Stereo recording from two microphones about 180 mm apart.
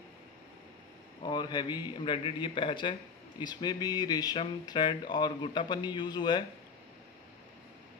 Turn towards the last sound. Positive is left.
turn(degrees=25)  # may be behind; listen again after turning